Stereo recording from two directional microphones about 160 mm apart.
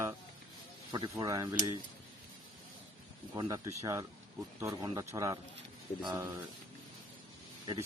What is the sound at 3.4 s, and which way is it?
Speech, 20° right (ahead or behind).